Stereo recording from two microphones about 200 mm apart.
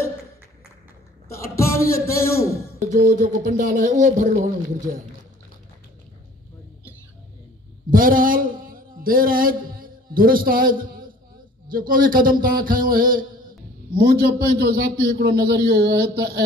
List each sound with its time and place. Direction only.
1.3 s a man's voice: 15° left (ahead or behind)
2.9 s speech: 40° right (ahead or behind)
7.9 s a sound: 45° right (ahead or behind)
11.7 s a man's voice: 45° right (ahead or behind)